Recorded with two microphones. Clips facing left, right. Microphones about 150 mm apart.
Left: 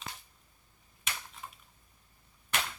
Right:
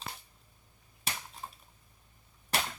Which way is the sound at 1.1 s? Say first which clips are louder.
Right 2 dB; 35° right (ahead or behind).